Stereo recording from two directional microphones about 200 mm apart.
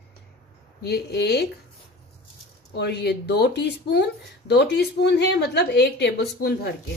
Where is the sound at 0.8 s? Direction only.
55° left (ahead or behind).